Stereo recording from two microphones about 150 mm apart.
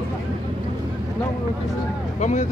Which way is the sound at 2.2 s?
55° left (ahead or behind).